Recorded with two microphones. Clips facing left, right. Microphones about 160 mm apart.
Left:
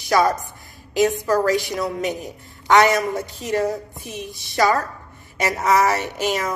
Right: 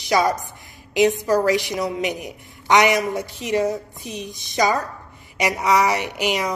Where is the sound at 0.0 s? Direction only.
20° right (ahead or behind).